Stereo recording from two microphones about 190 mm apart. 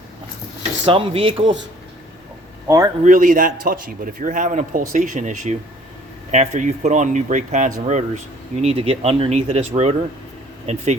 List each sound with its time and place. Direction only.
0.9 s speech: 30° right (ahead or behind)
2.6 s a man's voice: 15° right (ahead or behind)
3.0 s a man's voice: 45° right (ahead or behind)